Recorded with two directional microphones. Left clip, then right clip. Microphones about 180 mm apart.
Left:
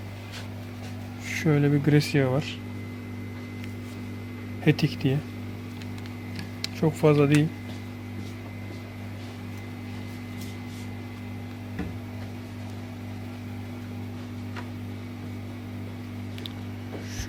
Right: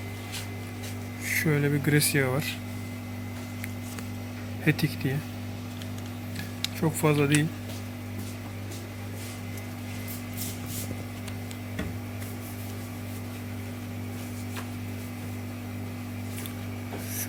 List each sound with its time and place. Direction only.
1.3 s speech: 40° left (ahead or behind)
4.6 s speech: 35° left (ahead or behind)
6.7 s speech: 40° left (ahead or behind)